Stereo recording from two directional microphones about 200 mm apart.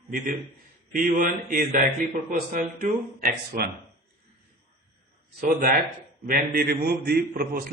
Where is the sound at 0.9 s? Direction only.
45° right (ahead or behind).